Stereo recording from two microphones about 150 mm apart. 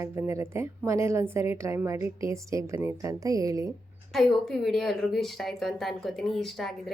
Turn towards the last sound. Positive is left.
turn(degrees=0)  # may be behind; listen again after turning